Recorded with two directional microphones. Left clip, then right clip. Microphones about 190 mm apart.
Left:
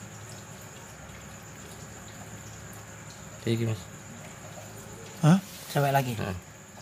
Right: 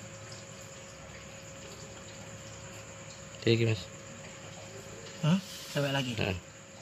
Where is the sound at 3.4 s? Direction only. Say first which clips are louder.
Right 3 dB; 25° right (ahead or behind).